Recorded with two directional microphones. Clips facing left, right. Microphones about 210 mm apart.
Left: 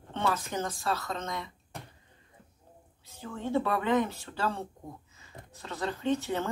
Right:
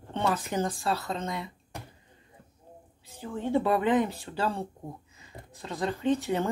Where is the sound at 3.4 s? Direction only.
15° right (ahead or behind).